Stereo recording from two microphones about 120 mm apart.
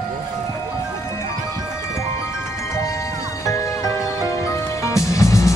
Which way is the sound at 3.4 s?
25° left (ahead or behind).